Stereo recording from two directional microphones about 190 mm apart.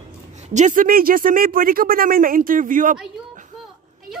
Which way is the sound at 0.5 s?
40° right (ahead or behind).